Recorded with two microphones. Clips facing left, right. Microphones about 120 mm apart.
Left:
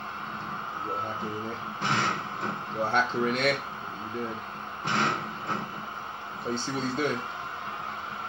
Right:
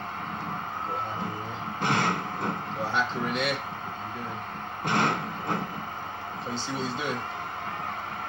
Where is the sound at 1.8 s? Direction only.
50° right (ahead or behind).